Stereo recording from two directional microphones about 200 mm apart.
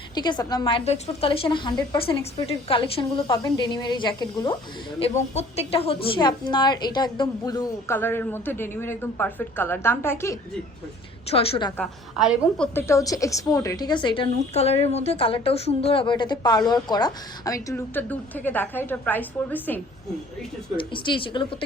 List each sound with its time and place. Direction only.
0.1 s a woman's voice: 20° left (ahead or behind)
11.3 s a woman's voice: 30° left (ahead or behind)
11.8 s a woman's voice: centre (ahead or behind)
12.7 s a woman's voice: 15° left (ahead or behind)
20.7 s a woman's voice: 25° left (ahead or behind)